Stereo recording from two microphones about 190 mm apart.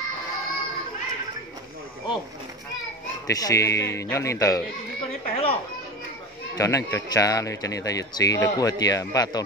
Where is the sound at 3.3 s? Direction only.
20° left (ahead or behind).